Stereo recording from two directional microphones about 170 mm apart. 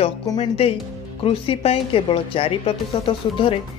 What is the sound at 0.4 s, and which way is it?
Speech, 35° left (ahead or behind).